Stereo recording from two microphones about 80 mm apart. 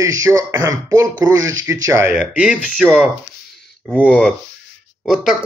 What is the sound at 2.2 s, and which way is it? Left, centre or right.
Speech, centre.